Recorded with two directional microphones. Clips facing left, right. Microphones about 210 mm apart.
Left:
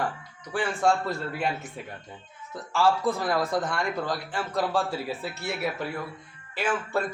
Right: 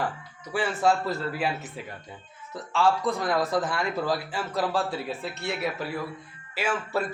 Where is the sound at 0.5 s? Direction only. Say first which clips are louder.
Even; 5° right (ahead or behind).